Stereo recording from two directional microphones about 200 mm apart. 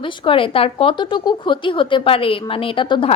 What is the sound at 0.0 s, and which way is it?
A woman's voice, 25° left (ahead or behind).